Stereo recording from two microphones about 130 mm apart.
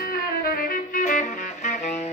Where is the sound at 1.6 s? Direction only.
60° left (ahead or behind).